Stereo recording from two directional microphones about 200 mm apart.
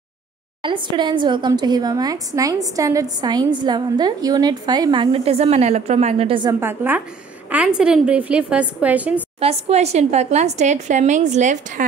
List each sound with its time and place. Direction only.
0.6 s a woman's voice: 25° right (ahead or behind)
6.6 s a woman's voice: 10° right (ahead or behind)
9.4 s speech: 30° right (ahead or behind)